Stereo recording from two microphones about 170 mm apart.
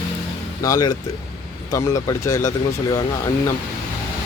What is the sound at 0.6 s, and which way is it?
Speech, 20° left (ahead or behind).